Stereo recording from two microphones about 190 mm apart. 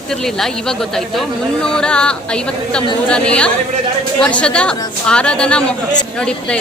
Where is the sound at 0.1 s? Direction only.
Centre (ahead or behind).